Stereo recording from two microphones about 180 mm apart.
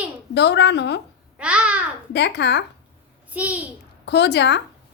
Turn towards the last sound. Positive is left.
turn(degrees=75)  # may be behind; listen again after turning